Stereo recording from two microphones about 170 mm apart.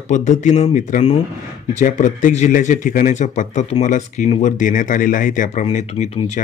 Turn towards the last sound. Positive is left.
turn(degrees=35)  # may be behind; listen again after turning